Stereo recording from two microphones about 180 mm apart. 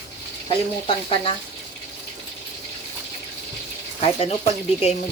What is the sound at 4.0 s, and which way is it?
Stir, 35° left (ahead or behind).